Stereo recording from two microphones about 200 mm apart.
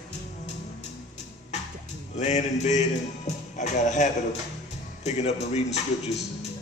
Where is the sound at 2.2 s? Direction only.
35° left (ahead or behind).